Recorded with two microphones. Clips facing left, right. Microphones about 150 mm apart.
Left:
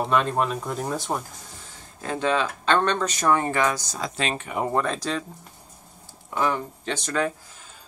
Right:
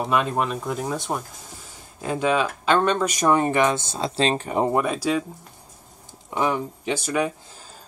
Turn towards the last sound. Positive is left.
turn(degrees=-10)  # may be behind; listen again after turning